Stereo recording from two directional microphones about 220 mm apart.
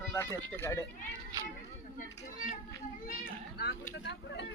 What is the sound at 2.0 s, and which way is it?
Children playing, 35° left (ahead or behind).